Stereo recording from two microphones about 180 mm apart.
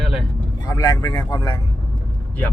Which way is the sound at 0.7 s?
20° left (ahead or behind).